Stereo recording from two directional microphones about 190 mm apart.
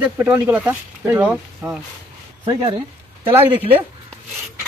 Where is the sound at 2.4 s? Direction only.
30° right (ahead or behind).